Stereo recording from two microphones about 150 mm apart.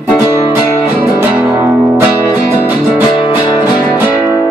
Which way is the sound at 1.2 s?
10° right (ahead or behind).